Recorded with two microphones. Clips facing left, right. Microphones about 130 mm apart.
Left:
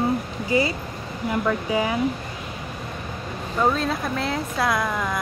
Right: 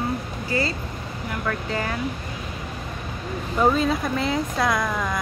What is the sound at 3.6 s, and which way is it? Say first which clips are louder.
Speech: right 2 dB; centre (ahead or behind).